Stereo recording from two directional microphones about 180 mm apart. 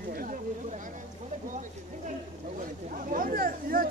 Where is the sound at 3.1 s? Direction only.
50° right (ahead or behind).